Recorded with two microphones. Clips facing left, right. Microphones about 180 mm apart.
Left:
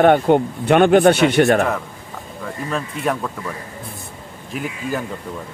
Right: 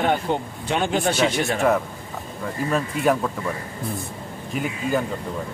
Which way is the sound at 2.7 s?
5° right (ahead or behind).